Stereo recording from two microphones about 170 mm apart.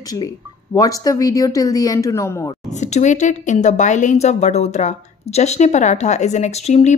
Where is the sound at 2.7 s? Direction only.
45° left (ahead or behind).